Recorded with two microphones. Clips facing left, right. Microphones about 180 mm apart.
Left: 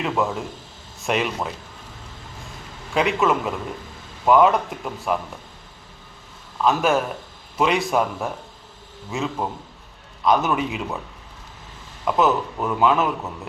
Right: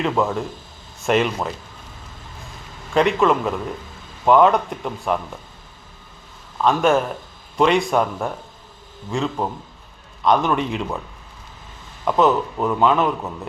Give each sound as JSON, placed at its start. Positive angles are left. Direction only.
{"t": 0.0, "sound": "a man's voice", "side_deg": 0}
{"t": 2.9, "sound": "a man's voice", "side_deg": 0}
{"t": 6.7, "sound": "a man's voice", "side_deg": 0}
{"t": 12.0, "sound": "a man's voice", "side_deg": 0}